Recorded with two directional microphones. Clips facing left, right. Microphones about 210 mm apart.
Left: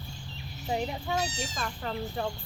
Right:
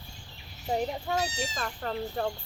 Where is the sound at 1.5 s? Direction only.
45° right (ahead or behind).